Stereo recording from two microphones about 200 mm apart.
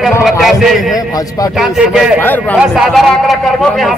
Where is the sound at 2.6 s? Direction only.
Centre (ahead or behind).